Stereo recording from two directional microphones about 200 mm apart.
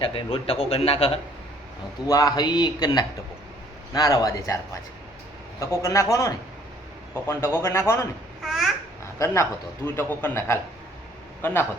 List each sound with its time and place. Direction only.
0.0 s a man's voice: 25° left (ahead or behind)
2.0 s a man's voice: 20° left (ahead or behind)
8.4 s babbling: centre (ahead or behind)
9.1 s a man's voice: 15° left (ahead or behind)